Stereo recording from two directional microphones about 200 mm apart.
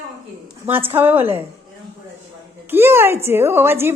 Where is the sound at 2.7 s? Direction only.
10° right (ahead or behind).